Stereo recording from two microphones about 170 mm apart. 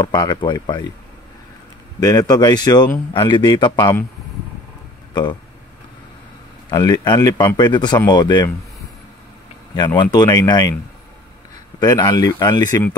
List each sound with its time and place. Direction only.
0.0 s speech: 25° left (ahead or behind)
2.0 s speech: 20° left (ahead or behind)
6.7 s speech: 20° left (ahead or behind)
9.8 s speech: 25° left (ahead or behind)
11.8 s speech: 25° left (ahead or behind)